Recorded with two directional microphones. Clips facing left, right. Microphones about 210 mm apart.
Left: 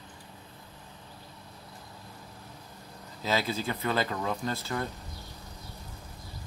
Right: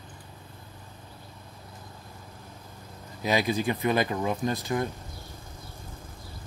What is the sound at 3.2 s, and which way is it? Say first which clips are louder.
Speech: right 4 dB; 15° right (ahead or behind).